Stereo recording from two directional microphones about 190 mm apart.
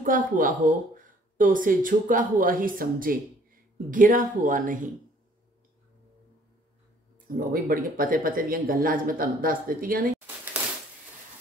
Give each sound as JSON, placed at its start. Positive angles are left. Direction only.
{"t": 0.0, "sound": "speech", "side_deg": -45}
{"t": 7.2, "sound": "speech", "side_deg": -50}